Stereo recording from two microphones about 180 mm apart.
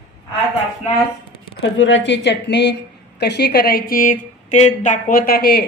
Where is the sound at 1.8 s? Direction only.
85° left; by 5.6 s 60° left (ahead or behind).